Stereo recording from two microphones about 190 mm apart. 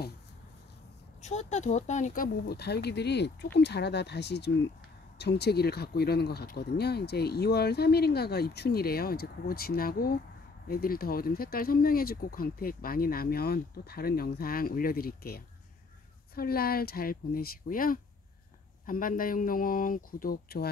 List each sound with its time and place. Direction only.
1.2 s speech: 40° left (ahead or behind); by 20.7 s 55° left (ahead or behind)